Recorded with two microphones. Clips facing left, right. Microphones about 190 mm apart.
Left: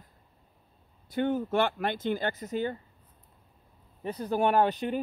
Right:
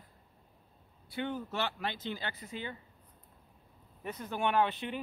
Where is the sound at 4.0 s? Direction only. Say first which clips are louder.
Left 7 dB; 35° left (ahead or behind).